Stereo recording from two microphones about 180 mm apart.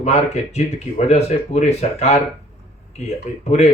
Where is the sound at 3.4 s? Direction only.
35° left (ahead or behind).